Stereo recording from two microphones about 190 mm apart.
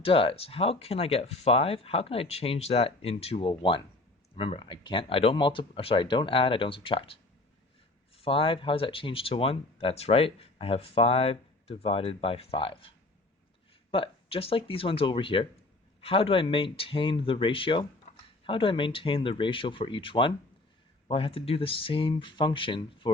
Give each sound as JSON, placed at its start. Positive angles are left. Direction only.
{"t": 0.0, "sound": "speech", "side_deg": 30}
{"t": 13.9, "sound": "speech", "side_deg": 30}